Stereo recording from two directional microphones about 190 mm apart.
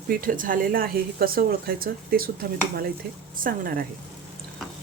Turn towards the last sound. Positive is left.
turn(degrees=-50)  # may be behind; listen again after turning